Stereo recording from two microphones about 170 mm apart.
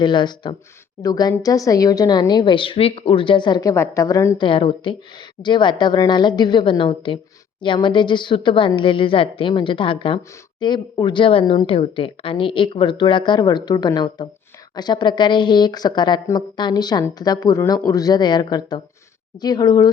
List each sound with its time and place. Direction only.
0.0 s a woman's voice: 25° left (ahead or behind)
4.4 s a woman's voice: 30° left (ahead or behind)